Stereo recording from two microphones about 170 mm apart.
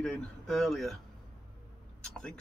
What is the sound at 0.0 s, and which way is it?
Speech, centre (ahead or behind).